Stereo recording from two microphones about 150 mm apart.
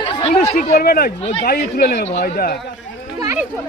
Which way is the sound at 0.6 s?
90° left.